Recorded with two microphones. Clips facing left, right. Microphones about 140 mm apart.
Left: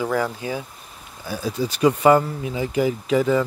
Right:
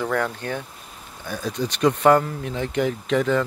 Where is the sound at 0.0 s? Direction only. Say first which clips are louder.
Left 1 dB; 5° left (ahead or behind).